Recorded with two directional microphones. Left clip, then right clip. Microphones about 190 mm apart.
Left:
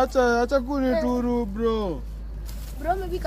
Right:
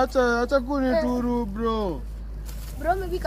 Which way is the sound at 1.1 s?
20° left (ahead or behind).